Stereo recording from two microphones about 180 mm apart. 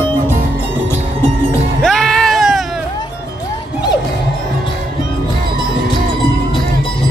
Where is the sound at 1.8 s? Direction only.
Centre (ahead or behind).